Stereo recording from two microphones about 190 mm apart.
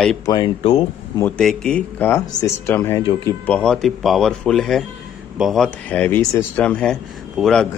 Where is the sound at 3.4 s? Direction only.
5° left (ahead or behind).